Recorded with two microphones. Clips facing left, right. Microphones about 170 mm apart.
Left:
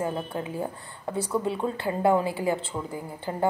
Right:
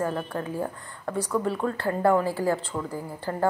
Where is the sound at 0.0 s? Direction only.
20° left (ahead or behind).